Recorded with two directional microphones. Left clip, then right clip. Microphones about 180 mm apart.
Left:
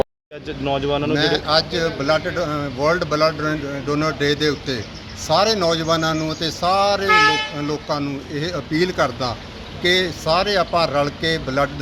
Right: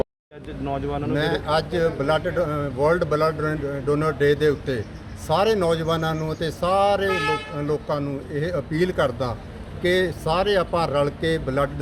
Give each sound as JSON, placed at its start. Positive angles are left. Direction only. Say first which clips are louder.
{"t": 0.6, "sound": "speech", "louder": "left 6 dB", "side_deg": 65}
{"t": 1.1, "sound": "speech", "louder": "left 3 dB", "side_deg": -15}